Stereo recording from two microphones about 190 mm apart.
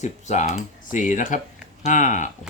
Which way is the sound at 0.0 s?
40° left (ahead or behind).